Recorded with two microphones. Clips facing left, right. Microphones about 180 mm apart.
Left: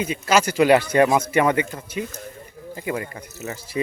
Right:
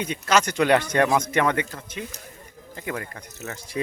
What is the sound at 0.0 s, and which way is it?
Speech, 5° left (ahead or behind).